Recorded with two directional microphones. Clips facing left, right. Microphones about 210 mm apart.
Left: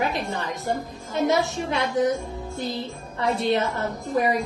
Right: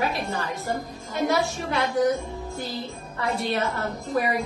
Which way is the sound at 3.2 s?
20° left (ahead or behind).